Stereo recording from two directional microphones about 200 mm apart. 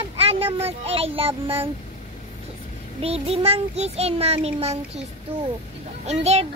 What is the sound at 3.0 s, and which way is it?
A child's voice, 30° right (ahead or behind).